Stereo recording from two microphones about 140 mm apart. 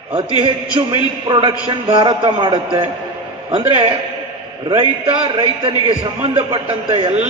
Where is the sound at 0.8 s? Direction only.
35° right (ahead or behind).